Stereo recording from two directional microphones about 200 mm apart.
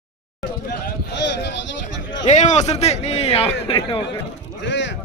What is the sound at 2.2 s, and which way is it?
A man's voice, 35° left (ahead or behind).